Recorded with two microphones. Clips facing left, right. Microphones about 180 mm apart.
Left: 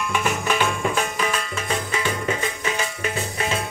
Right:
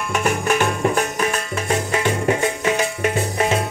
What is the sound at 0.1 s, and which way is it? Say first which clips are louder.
Music: right 5 dB; 45° right (ahead or behind).